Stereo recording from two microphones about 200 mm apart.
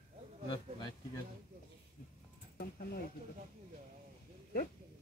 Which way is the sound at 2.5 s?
50° left (ahead or behind).